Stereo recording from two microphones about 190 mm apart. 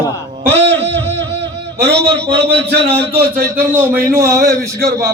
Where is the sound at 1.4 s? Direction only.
60° right (ahead or behind).